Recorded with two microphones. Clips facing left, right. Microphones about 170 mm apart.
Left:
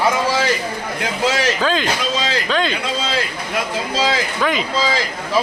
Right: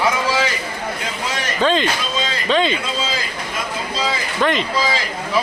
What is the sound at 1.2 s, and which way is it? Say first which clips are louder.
Speech: left 9 dB; 90° left.